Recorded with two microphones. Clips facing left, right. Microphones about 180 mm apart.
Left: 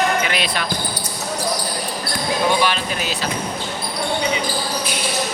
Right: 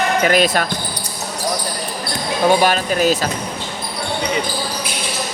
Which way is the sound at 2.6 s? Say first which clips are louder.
Right 6 dB; 45° right (ahead or behind).